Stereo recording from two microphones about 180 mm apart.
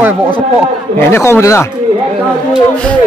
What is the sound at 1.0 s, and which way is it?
Speech, 15° left (ahead or behind).